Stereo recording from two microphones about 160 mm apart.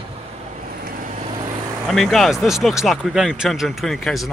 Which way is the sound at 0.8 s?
55° right (ahead or behind).